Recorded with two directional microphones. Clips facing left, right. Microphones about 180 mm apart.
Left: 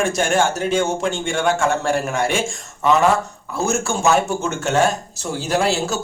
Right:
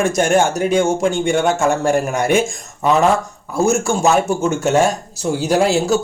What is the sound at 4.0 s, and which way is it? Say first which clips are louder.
Speech: even; 40° right (ahead or behind).